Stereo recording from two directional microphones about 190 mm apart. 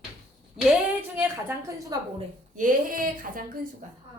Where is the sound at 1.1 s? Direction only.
10° right (ahead or behind).